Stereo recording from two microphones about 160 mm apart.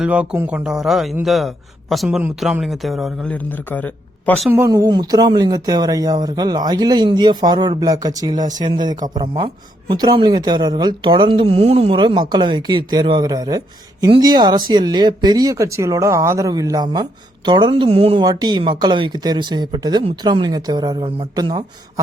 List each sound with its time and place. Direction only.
0.0 s a man's voice: 5° right (ahead or behind); by 4.4 s 10° left (ahead or behind)
4.4 s speech: 15° right (ahead or behind)